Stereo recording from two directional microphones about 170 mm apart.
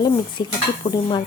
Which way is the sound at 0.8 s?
45° left (ahead or behind).